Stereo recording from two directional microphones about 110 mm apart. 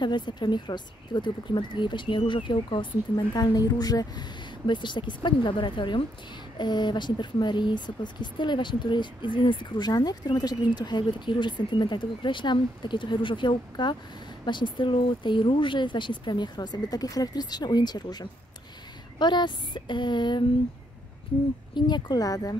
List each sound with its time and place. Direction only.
0.0 s speech: 45° left (ahead or behind)
21.7 s speech: 40° left (ahead or behind)